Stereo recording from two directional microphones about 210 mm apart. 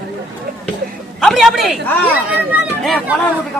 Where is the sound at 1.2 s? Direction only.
Centre (ahead or behind).